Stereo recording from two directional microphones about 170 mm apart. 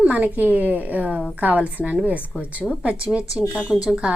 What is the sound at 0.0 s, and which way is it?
A woman's voice, 10° right (ahead or behind).